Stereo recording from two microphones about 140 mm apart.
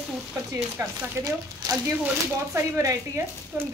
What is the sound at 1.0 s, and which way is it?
Speech, 25° right (ahead or behind).